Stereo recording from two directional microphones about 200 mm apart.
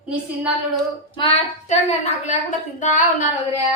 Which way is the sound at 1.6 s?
35° left (ahead or behind).